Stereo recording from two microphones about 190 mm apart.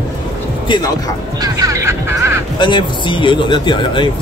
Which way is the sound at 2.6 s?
25° left (ahead or behind).